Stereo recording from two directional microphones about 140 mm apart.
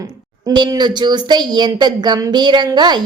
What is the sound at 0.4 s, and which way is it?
Speech, 30° right (ahead or behind).